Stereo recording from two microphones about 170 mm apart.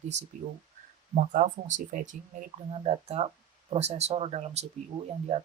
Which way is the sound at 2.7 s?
35° right (ahead or behind).